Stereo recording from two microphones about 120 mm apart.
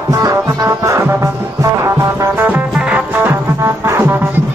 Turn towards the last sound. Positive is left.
turn(degrees=-20)  # may be behind; listen again after turning